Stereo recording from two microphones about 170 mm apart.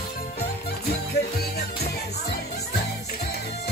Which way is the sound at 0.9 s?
65° left (ahead or behind).